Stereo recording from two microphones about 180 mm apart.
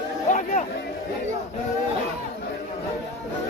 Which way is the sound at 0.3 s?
45° left (ahead or behind).